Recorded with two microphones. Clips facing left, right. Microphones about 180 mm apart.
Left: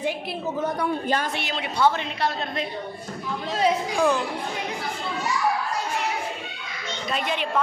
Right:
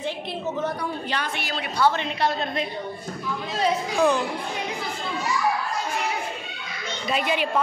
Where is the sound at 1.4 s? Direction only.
20° left (ahead or behind).